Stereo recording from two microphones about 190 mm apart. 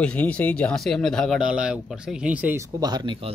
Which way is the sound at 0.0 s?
5° left (ahead or behind).